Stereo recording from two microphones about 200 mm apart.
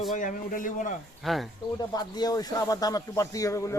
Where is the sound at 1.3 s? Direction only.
Centre (ahead or behind).